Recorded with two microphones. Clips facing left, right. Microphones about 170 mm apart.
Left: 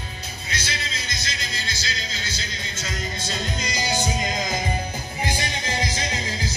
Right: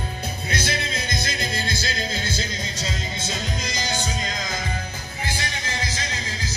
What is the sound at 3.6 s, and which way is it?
Music, 10° left (ahead or behind).